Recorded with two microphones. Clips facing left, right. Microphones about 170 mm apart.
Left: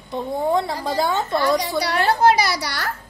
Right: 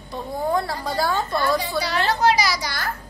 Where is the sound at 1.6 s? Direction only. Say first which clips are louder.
Left 2 dB; 70° left (ahead or behind).